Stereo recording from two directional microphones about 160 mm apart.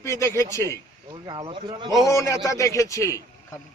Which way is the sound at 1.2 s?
25° right (ahead or behind).